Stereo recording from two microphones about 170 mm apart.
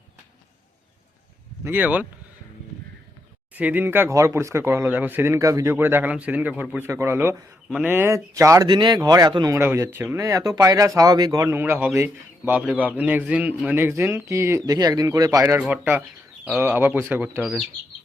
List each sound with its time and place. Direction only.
1.6 s speech: 10° right (ahead or behind)
3.5 s speech: 10° right (ahead or behind)